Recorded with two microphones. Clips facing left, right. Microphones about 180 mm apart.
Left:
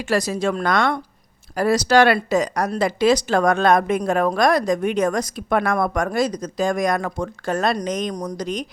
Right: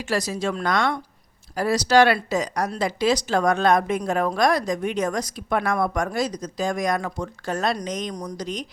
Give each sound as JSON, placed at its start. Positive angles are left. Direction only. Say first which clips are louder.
{"t": 0.0, "sound": "a woman's voice", "louder": "left 4 dB", "side_deg": 55}